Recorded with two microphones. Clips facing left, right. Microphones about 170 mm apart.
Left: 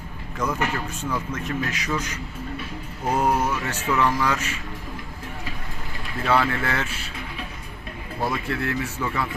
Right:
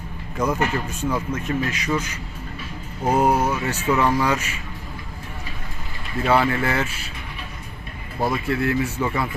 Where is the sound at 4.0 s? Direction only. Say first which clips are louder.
Right 1 dB; 20° right (ahead or behind).